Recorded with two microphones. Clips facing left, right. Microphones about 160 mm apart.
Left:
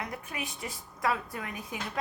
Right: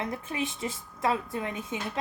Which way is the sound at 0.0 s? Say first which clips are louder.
Right 6 dB; 25° right (ahead or behind).